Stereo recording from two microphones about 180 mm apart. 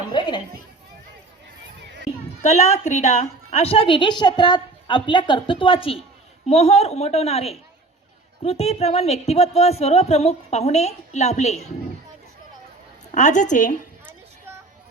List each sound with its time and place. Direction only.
0.1 s children playing: 25° left (ahead or behind)
2.4 s a woman's voice: 40° left (ahead or behind)
13.1 s a woman's voice: 40° left (ahead or behind)